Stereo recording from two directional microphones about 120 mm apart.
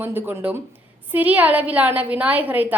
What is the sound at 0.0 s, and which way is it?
A woman's voice, 15° right (ahead or behind).